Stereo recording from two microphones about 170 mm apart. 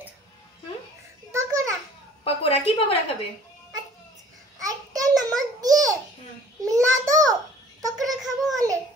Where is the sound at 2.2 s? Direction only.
35° left (ahead or behind).